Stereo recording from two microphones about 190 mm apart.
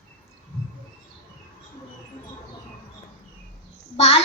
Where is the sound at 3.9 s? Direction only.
35° left (ahead or behind).